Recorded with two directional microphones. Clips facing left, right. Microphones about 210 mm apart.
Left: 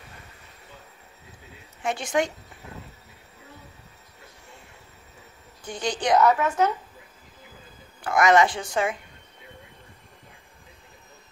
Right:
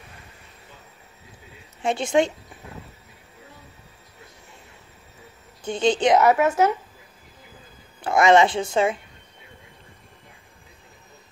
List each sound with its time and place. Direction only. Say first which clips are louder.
1.8 s speech: right 5 dB; 25° right (ahead or behind)
5.6 s speech: right 8 dB; 25° right (ahead or behind)
8.0 s speech: right 3 dB; 25° right (ahead or behind)